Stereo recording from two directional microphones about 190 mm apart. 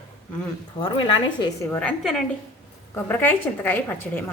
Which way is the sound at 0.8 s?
25° left (ahead or behind).